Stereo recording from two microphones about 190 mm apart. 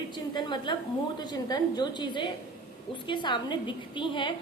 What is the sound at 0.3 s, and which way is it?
A woman's voice, 25° left (ahead or behind).